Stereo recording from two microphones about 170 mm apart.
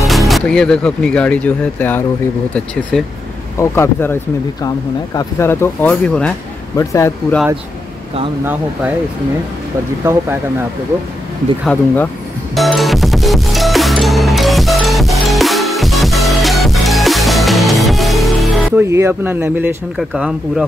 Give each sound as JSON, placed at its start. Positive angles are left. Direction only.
{"t": 0.3, "sound": "speech", "side_deg": 5}
{"t": 3.5, "sound": "speech", "side_deg": 15}
{"t": 6.8, "sound": "speech", "side_deg": 15}
{"t": 10.0, "sound": "speech", "side_deg": -15}
{"t": 11.6, "sound": "speech", "side_deg": 10}
{"t": 12.5, "sound": "music", "side_deg": 0}
{"t": 18.8, "sound": "speech", "side_deg": -15}